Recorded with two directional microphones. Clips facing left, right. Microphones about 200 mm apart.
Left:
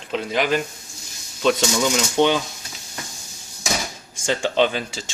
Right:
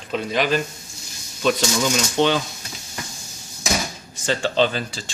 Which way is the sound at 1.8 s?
15° left (ahead or behind).